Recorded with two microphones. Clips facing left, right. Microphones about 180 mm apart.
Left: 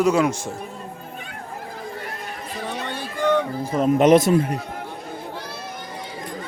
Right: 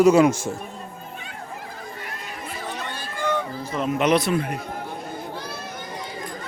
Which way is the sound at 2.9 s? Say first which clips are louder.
Left 6 dB; 65° left (ahead or behind).